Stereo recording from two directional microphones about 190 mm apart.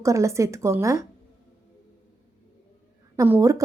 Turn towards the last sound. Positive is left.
turn(degrees=-15)  # may be behind; listen again after turning